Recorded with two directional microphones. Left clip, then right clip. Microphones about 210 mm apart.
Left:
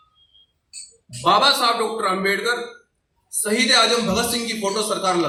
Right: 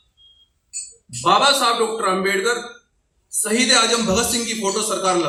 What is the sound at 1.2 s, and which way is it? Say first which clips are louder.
A man's voice: right 1 dB; 40° left (ahead or behind).